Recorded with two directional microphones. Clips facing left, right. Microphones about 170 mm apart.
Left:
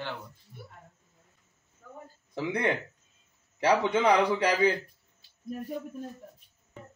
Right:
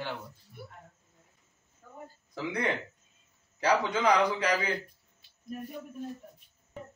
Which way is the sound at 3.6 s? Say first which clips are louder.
Left 3 dB; 25° left (ahead or behind).